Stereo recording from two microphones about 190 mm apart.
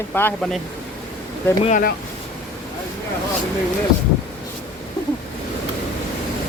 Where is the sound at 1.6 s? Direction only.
40° left (ahead or behind).